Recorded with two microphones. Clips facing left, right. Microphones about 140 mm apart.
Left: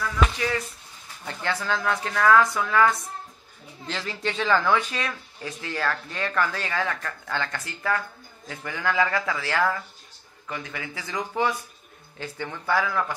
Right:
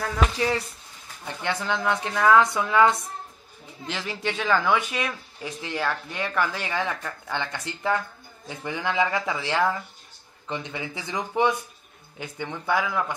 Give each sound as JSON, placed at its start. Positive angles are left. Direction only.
{"t": 1.2, "sound": "speech", "side_deg": -15}